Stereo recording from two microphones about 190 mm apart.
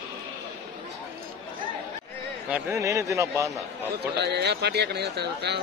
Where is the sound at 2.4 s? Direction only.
10° right (ahead or behind).